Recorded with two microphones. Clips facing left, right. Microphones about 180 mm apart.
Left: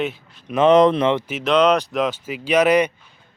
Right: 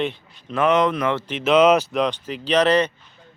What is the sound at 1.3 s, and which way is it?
Speech, centre (ahead or behind).